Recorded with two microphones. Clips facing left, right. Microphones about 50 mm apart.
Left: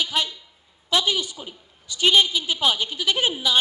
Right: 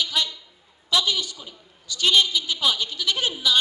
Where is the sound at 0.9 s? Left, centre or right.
Left.